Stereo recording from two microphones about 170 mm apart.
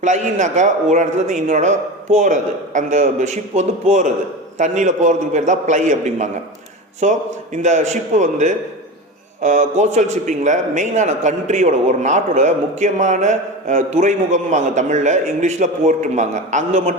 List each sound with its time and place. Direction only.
0.0 s a man's voice: 45° right (ahead or behind)